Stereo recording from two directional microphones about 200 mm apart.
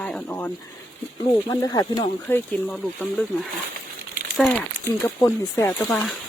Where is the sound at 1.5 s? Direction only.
20° left (ahead or behind).